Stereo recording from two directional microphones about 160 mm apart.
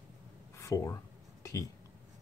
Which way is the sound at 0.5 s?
20° left (ahead or behind).